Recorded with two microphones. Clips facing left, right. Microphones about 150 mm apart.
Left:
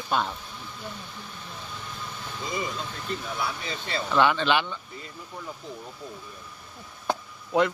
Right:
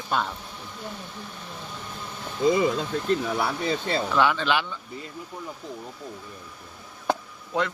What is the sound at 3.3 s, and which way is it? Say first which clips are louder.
Speech: right 5 dB; 70° right (ahead or behind).